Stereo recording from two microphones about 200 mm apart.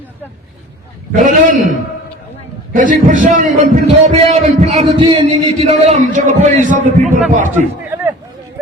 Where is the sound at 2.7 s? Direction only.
40° right (ahead or behind).